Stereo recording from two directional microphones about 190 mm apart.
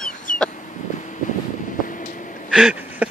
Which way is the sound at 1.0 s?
40° left (ahead or behind).